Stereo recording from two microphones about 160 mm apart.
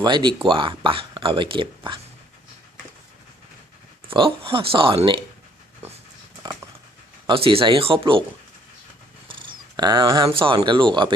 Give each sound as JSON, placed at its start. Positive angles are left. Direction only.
{"t": 0.0, "sound": "speech", "side_deg": -30}
{"t": 4.1, "sound": "speech", "side_deg": -35}
{"t": 7.3, "sound": "speech", "side_deg": -35}
{"t": 9.2, "sound": "cat", "side_deg": -30}
{"t": 10.2, "sound": "speech", "side_deg": -35}